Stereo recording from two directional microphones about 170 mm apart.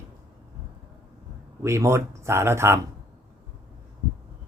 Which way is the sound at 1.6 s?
15° right (ahead or behind).